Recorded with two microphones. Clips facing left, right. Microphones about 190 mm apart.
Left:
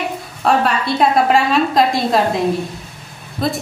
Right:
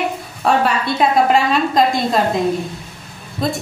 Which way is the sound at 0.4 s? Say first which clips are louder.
Even; centre (ahead or behind).